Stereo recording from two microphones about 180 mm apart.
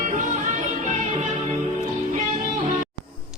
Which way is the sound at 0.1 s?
40° right (ahead or behind).